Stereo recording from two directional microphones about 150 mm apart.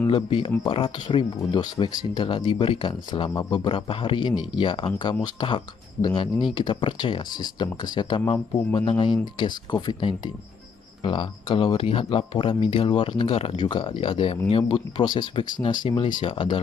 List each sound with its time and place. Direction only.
0.0 s speech: 35° left (ahead or behind)